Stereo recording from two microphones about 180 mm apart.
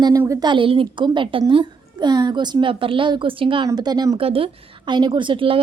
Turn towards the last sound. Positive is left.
turn(degrees=-30)  # may be behind; listen again after turning